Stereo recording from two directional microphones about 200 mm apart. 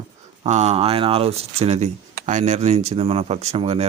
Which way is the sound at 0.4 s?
35° right (ahead or behind).